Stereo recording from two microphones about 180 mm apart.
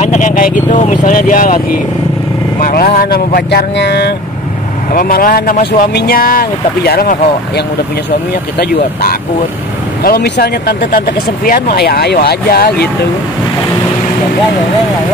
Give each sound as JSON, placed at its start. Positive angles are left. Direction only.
{"t": 0.0, "sound": "speech", "side_deg": 40}
{"t": 2.6, "sound": "speech", "side_deg": 55}
{"t": 4.9, "sound": "speech", "side_deg": 50}
{"t": 10.0, "sound": "speech", "side_deg": 65}